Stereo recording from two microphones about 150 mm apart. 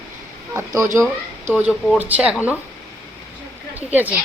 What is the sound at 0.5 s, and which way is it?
A woman's voice, 20° right (ahead or behind).